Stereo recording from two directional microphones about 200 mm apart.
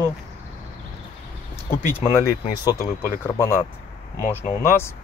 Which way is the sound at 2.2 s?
15° left (ahead or behind).